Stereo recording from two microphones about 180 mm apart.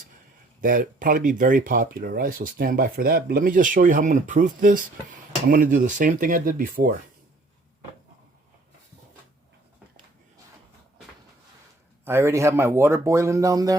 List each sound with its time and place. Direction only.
0.6 s speech: 50° right (ahead or behind)
12.0 s speech: 15° right (ahead or behind)